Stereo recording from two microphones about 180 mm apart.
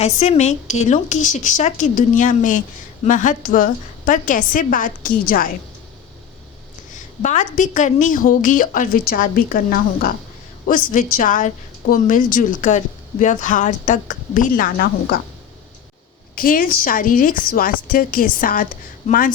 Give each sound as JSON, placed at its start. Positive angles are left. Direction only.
{"t": 0.0, "sound": "a woman's voice", "side_deg": 40}
{"t": 6.9, "sound": "a woman's voice", "side_deg": 45}
{"t": 16.3, "sound": "a woman's voice", "side_deg": 50}